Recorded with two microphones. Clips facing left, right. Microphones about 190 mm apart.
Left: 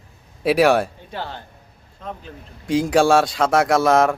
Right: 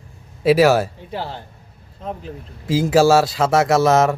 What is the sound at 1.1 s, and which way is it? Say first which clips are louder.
Speech: right 3 dB; 30° right (ahead or behind).